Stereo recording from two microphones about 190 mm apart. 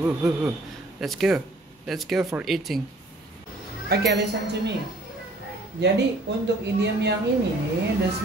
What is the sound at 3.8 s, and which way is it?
Speech, 65° right (ahead or behind).